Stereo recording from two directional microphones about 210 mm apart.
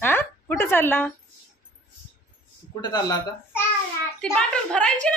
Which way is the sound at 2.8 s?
20° left (ahead or behind).